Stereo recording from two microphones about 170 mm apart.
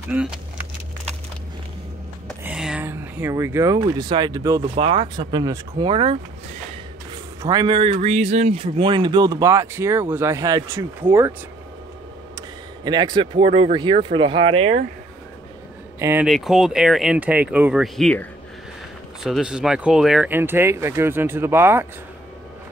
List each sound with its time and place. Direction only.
0.1 s speech: 5° right (ahead or behind)
2.4 s speech: 5° right (ahead or behind); by 6.1 s 30° right (ahead or behind)
7.4 s speech: 25° right (ahead or behind)
12.4 s speech: 25° right (ahead or behind)
16.0 s speech: 15° right (ahead or behind)
16.3 s speech: centre (ahead or behind)
19.2 s speech: 5° right (ahead or behind)